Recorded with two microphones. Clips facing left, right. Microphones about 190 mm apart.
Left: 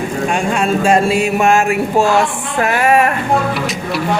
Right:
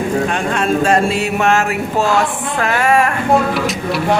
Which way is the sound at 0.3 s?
10° left (ahead or behind).